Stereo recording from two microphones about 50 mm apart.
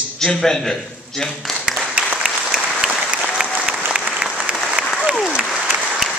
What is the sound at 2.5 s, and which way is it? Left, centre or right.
Applause, centre.